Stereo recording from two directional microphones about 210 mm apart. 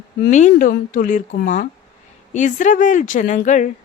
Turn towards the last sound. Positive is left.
turn(degrees=35)  # may be behind; listen again after turning